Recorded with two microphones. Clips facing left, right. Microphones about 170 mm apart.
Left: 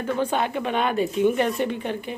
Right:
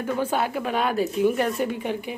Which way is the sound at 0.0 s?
10° right (ahead or behind).